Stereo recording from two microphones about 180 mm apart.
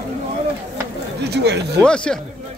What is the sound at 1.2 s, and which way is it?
Speech, 65° right (ahead or behind).